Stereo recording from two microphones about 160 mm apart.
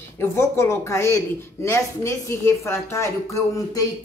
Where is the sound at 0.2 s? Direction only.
15° left (ahead or behind).